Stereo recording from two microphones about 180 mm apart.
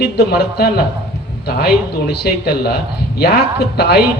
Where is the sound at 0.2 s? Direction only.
60° left (ahead or behind).